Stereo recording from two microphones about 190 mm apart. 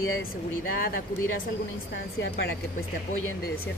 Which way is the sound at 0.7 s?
50° left (ahead or behind).